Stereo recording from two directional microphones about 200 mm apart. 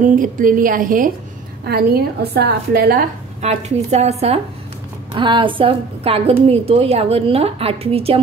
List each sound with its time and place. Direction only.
0.0 s a woman's voice: 40° right (ahead or behind)
3.4 s a woman's voice: 35° right (ahead or behind)